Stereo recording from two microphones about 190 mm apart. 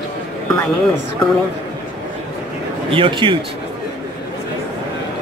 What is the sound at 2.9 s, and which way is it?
Speech, 25° right (ahead or behind).